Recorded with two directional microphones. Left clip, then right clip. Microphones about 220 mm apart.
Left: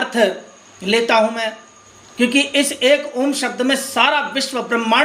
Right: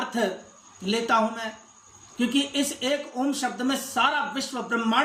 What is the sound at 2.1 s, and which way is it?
Speech, 15° right (ahead or behind).